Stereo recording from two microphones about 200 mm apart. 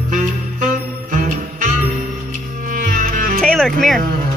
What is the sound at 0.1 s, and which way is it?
Music, 40° right (ahead or behind).